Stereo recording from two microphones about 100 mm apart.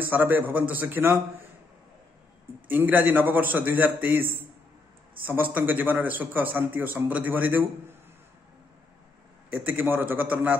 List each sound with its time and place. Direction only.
0.0 s a man's voice: 20° right (ahead or behind)
2.7 s a man's voice: 20° right (ahead or behind)
9.7 s a man's voice: 20° right (ahead or behind)